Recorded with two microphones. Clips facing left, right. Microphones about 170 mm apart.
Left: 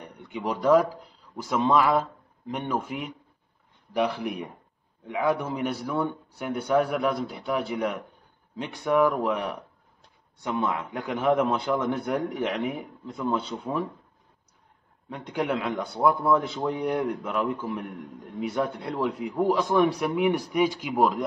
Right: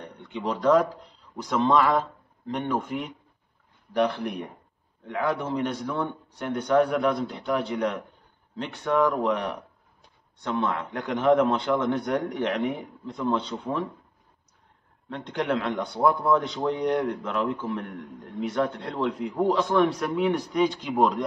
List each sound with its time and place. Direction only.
0.3 s a man's voice: 10° left (ahead or behind)
15.0 s a man's voice: 10° left (ahead or behind)